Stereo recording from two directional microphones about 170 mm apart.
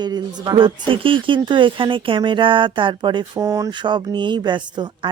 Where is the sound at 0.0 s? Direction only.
25° right (ahead or behind).